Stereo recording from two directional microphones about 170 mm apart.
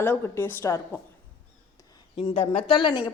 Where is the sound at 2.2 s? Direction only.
35° left (ahead or behind).